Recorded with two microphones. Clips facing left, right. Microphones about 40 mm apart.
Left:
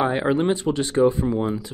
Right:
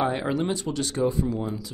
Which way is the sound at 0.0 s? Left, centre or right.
Centre.